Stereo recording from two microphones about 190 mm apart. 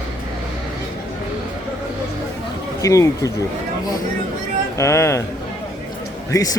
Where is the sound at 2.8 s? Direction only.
15° left (ahead or behind).